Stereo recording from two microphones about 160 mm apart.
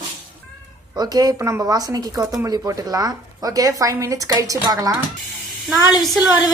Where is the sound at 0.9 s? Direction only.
25° right (ahead or behind).